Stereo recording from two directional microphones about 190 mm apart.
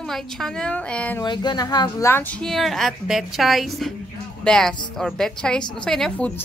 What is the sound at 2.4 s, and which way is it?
A woman's voice, centre (ahead or behind).